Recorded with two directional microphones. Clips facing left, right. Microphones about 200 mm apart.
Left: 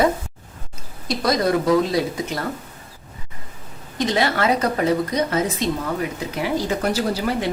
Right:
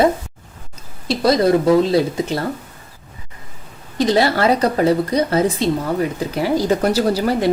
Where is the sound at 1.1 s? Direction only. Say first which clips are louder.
Right 5 dB; 30° right (ahead or behind).